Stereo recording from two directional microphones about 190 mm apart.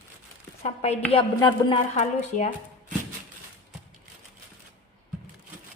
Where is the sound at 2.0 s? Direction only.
40° left (ahead or behind).